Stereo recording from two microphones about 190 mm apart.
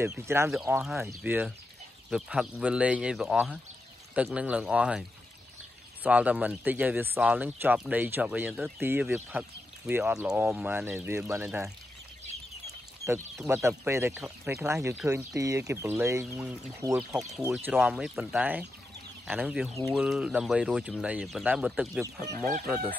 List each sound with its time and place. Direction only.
0.0 s speech: 15° right (ahead or behind)
6.0 s speech: 5° right (ahead or behind)
13.0 s speech: 15° right (ahead or behind)
17.5 s speech: 5° right (ahead or behind)